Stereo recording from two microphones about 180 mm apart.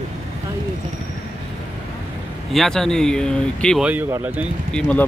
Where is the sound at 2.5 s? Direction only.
Centre (ahead or behind).